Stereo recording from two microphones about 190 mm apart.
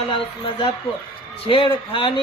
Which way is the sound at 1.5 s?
30° left (ahead or behind).